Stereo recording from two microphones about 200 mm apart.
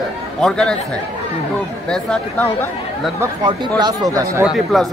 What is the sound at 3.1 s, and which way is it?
Speech, 20° right (ahead or behind).